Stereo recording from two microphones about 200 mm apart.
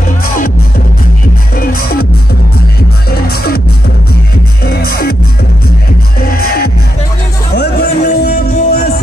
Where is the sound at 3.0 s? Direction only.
50° left (ahead or behind).